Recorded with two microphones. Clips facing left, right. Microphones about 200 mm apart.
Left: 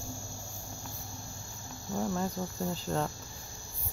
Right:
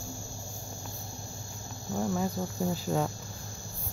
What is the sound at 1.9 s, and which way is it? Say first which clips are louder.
Cricket: right 2 dB; 5° right (ahead or behind).